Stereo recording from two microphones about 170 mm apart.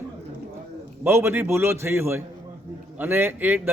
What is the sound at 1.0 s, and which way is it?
A man's voice, 15° right (ahead or behind).